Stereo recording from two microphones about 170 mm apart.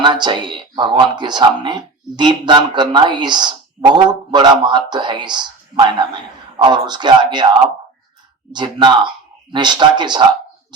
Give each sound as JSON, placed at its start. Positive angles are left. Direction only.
{"t": 0.0, "sound": "speech", "side_deg": -25}